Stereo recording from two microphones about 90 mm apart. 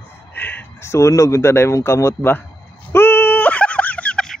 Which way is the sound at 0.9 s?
35° left (ahead or behind).